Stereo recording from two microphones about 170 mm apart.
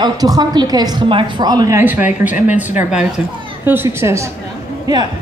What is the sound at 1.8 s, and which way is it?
Speech, 10° right (ahead or behind).